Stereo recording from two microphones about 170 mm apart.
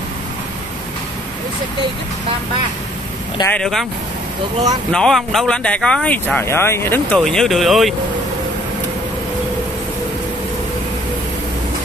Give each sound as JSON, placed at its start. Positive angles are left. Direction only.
{"t": 3.4, "sound": "speech", "side_deg": 5}
{"t": 4.9, "sound": "speech", "side_deg": 0}